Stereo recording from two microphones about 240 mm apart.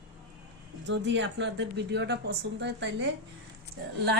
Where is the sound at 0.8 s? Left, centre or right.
Right.